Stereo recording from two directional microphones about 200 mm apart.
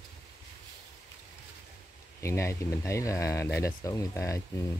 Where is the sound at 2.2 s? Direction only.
15° left (ahead or behind).